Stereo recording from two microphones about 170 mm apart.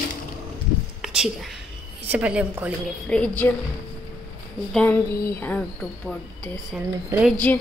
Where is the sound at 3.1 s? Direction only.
5° left (ahead or behind).